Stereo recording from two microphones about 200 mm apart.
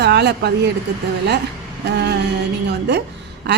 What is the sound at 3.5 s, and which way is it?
Quack, 55° right (ahead or behind).